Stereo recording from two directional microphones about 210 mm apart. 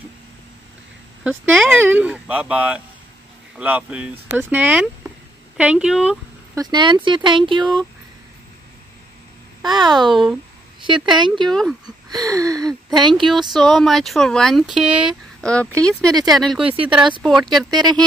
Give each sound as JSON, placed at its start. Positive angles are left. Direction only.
{"t": 1.2, "sound": "speech", "side_deg": -10}
{"t": 6.5, "sound": "speech", "side_deg": -20}
{"t": 9.6, "sound": "speech", "side_deg": -20}
{"t": 10.0, "sound": "speech", "side_deg": 0}
{"t": 11.1, "sound": "speech", "side_deg": -20}
{"t": 11.4, "sound": "speech", "side_deg": 0}
{"t": 11.8, "sound": "a sound", "side_deg": -15}
{"t": 13.3, "sound": "speech", "side_deg": 0}